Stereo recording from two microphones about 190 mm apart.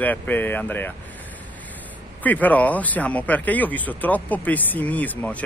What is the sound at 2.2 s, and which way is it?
Speech, 10° left (ahead or behind).